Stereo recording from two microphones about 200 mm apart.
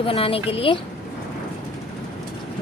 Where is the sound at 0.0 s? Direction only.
30° left (ahead or behind).